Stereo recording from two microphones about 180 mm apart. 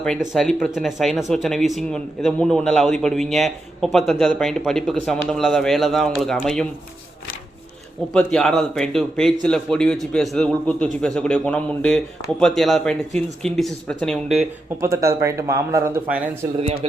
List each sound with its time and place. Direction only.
0.0 s a man's voice: centre (ahead or behind)
8.1 s a man's voice: 5° left (ahead or behind)
14.8 s speech: 15° right (ahead or behind)